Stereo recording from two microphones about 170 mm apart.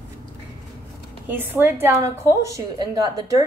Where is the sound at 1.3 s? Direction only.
10° right (ahead or behind).